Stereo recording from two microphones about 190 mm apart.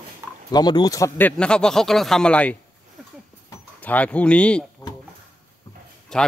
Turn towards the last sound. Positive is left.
turn(degrees=5)  # may be behind; listen again after turning